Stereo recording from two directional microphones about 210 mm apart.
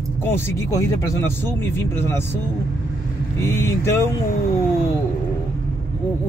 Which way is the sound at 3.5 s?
10° left (ahead or behind).